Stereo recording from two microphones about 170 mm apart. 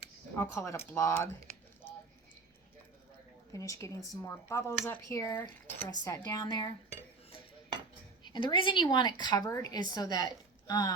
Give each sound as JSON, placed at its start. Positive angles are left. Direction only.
{"t": 0.3, "sound": "speech", "side_deg": 15}
{"t": 3.5, "sound": "a woman's voice", "side_deg": 20}
{"t": 8.2, "sound": "a woman's voice", "side_deg": 25}